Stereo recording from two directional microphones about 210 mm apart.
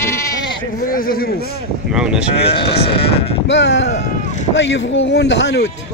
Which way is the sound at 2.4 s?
25° left (ahead or behind).